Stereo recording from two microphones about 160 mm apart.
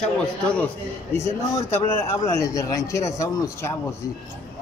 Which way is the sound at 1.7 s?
15° left (ahead or behind).